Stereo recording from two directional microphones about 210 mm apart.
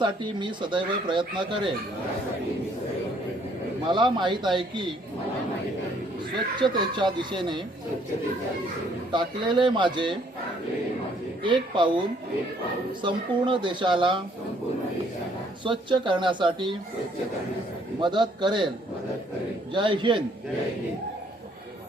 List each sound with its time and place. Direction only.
0.0 s speech: 20° right (ahead or behind)
3.8 s speech: 20° right (ahead or behind)
6.3 s speech: 20° right (ahead or behind)
9.1 s speech: 20° right (ahead or behind)
11.4 s speech: 25° right (ahead or behind)
13.0 s speech: 20° right (ahead or behind)
15.6 s speech: 25° right (ahead or behind)
18.0 s speech: 20° right (ahead or behind)
19.7 s speech: 20° right (ahead or behind)